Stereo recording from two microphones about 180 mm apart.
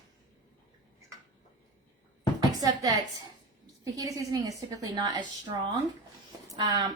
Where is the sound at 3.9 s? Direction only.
20° right (ahead or behind).